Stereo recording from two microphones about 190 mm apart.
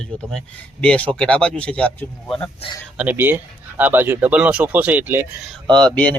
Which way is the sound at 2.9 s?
10° right (ahead or behind).